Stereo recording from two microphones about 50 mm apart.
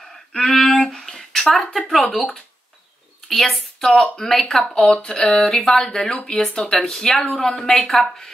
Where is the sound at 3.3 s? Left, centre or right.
Centre.